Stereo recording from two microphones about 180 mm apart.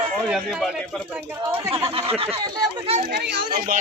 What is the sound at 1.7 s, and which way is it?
Speech, 30° right (ahead or behind).